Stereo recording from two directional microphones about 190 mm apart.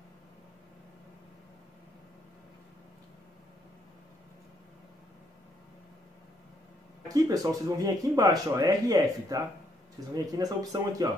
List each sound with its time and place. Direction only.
7.2 s speech: 20° right (ahead or behind)